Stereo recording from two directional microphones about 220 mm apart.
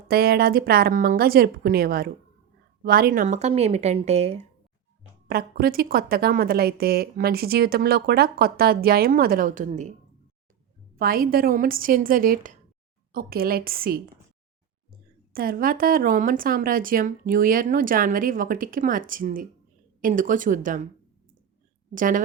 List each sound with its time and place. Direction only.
0.1 s a woman's voice: 45° right (ahead or behind)
5.3 s a woman's voice: 40° right (ahead or behind)
10.9 s a woman's voice: 40° right (ahead or behind)
15.3 s a woman's voice: 40° right (ahead or behind)
21.9 s a woman's voice: 35° right (ahead or behind)